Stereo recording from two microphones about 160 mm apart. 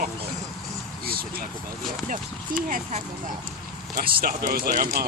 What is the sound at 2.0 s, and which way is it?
Speech, 55° right (ahead or behind).